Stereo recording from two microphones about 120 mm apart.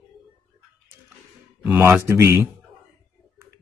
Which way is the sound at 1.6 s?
15° right (ahead or behind).